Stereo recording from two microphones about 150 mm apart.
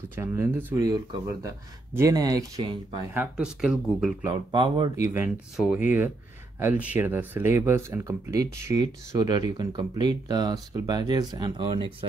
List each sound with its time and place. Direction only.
0.1 s speech: 15° right (ahead or behind)
0.8 s speech: 25° right (ahead or behind)
3.2 s speech: 5° right (ahead or behind)
4.5 s speech: 30° right (ahead or behind)
5.0 s speech: 15° right (ahead or behind); by 12.1 s 35° right (ahead or behind)